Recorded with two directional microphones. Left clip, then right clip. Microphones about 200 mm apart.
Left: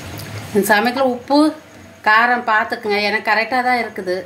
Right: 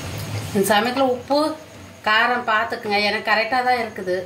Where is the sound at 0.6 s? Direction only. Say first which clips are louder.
Left 2 dB; 50° left (ahead or behind).